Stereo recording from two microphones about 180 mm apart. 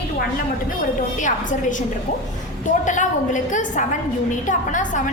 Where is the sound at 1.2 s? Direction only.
45° left (ahead or behind).